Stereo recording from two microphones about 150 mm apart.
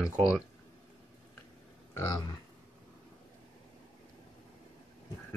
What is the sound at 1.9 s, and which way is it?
Speech, 25° left (ahead or behind).